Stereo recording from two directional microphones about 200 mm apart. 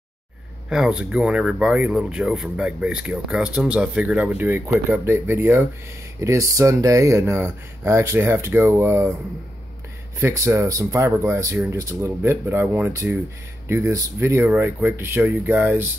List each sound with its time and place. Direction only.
0.7 s speech: 5° right (ahead or behind)
10.2 s speech: 15° right (ahead or behind)